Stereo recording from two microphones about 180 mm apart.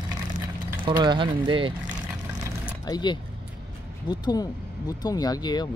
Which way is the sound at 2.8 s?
25° left (ahead or behind).